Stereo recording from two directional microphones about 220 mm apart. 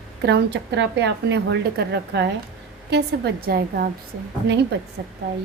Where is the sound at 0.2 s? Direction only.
50° right (ahead or behind).